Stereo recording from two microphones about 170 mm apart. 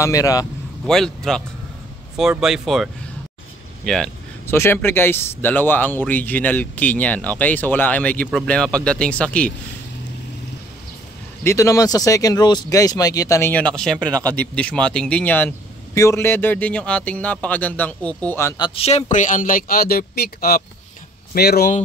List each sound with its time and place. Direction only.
0.0 s speech: 20° left (ahead or behind)
0.8 s speech: 5° left (ahead or behind)
3.8 s a sound: 5° left (ahead or behind)
4.6 s speech: 15° left (ahead or behind)
11.4 s speech: 20° left (ahead or behind)
18.6 s speech: 35° left (ahead or behind); by 21.6 s 65° left (ahead or behind)